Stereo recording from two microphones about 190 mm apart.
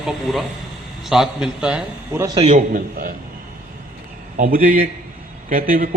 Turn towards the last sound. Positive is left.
turn(degrees=-45)  # may be behind; listen again after turning